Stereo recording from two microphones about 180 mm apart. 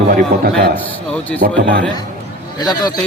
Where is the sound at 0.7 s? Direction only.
10° left (ahead or behind).